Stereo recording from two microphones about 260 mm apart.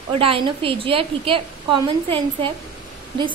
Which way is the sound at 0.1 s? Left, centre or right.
Right.